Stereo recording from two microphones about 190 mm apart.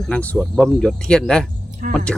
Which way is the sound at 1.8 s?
50° right (ahead or behind).